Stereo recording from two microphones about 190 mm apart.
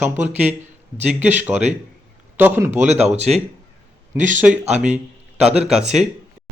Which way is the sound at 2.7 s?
35° right (ahead or behind).